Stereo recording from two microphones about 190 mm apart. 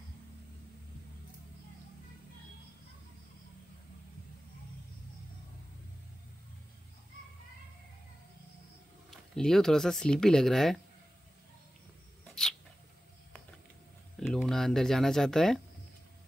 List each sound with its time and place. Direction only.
9.1 s speech: 5° left (ahead or behind)
14.2 s speech: 5° left (ahead or behind)